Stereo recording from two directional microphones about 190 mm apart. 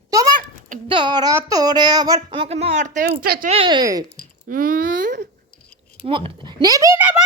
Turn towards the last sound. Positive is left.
turn(degrees=-10)  # may be behind; listen again after turning